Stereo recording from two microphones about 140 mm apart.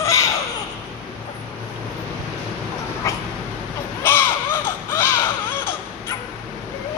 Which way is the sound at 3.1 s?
20° left (ahead or behind).